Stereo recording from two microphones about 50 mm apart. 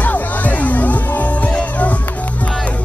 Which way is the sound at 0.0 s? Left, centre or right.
Left.